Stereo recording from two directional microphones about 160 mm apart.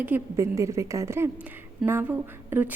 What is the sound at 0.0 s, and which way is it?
A woman's voice, 15° right (ahead or behind).